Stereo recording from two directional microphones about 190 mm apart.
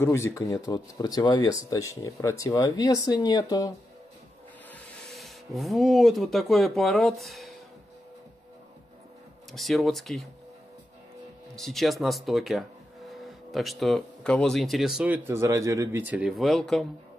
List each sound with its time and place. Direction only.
0.0 s speech: 15° left (ahead or behind)
4.7 s speech: centre (ahead or behind)
9.5 s speech: centre (ahead or behind)
11.5 s speech: centre (ahead or behind)